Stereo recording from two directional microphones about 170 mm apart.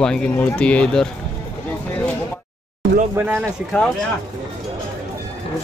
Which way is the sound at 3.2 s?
10° right (ahead or behind).